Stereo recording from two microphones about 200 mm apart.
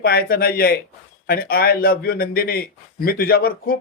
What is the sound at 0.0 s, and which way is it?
Speech, 50° left (ahead or behind).